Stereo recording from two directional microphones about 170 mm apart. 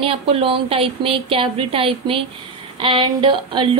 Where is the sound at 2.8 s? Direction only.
30° right (ahead or behind).